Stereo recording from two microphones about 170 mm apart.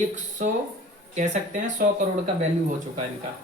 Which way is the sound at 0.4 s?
50° right (ahead or behind).